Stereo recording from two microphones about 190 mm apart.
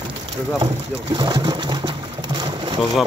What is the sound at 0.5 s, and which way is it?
Pigeon, 20° right (ahead or behind).